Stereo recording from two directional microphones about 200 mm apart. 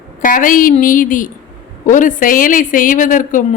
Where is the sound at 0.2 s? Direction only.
40° left (ahead or behind).